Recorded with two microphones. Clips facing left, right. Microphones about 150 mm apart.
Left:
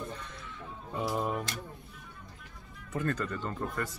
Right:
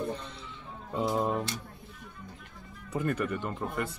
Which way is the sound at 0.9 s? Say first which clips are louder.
Right 3 dB; 20° right (ahead or behind).